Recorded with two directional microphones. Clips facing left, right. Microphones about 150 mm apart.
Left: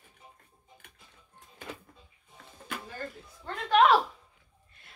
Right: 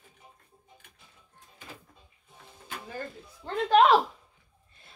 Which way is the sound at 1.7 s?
75° left (ahead or behind).